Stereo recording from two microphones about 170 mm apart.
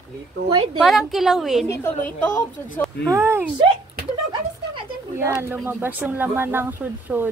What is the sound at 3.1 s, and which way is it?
Speech, 15° right (ahead or behind).